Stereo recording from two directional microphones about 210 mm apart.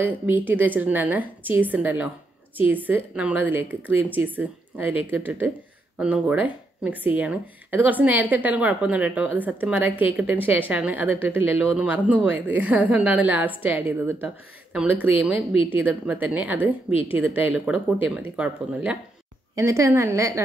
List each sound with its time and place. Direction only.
0.0 s speech: 10° right (ahead or behind)
15.5 s speech: 25° left (ahead or behind)
15.8 s speech: 10° right (ahead or behind)